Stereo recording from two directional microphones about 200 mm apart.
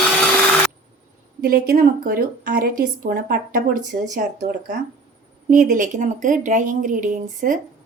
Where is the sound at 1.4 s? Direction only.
45° right (ahead or behind).